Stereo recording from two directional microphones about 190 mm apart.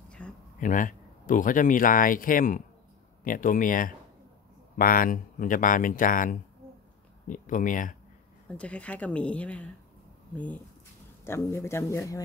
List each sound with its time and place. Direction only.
0.2 s a sound: 5° left (ahead or behind)
0.6 s speech: 45° left (ahead or behind)
8.5 s speech: 5° left (ahead or behind)